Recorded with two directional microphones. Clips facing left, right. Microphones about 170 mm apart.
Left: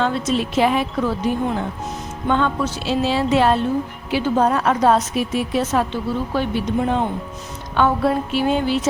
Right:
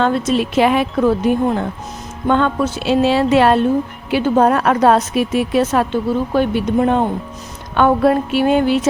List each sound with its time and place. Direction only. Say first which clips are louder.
0.0 s a woman's voice: right 4 dB; 55° right (ahead or behind)